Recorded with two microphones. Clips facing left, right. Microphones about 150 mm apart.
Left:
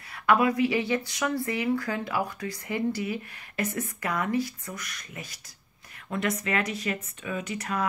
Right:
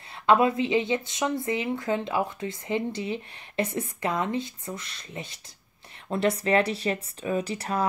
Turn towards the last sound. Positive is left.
turn(degrees=-30)  # may be behind; listen again after turning